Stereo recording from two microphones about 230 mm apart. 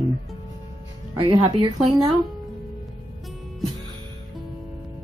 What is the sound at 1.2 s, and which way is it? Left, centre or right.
Speech, right.